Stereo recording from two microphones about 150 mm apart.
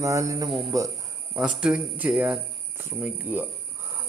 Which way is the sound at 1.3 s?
5° right (ahead or behind).